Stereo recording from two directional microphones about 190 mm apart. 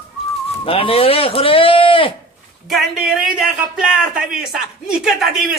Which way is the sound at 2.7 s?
Centre (ahead or behind).